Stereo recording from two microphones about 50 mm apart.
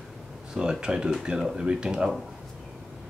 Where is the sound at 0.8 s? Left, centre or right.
Centre.